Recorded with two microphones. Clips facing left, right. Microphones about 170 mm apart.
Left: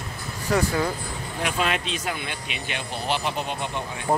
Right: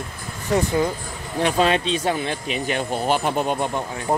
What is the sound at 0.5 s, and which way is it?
Speech, 20° right (ahead or behind).